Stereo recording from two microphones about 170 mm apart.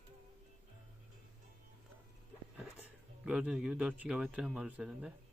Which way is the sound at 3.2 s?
5° right (ahead or behind).